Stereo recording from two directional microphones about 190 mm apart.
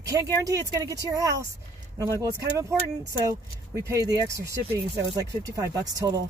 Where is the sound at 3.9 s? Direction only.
20° right (ahead or behind).